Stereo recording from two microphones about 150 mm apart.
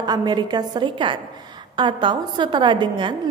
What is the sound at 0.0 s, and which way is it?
A woman's voice, 25° right (ahead or behind).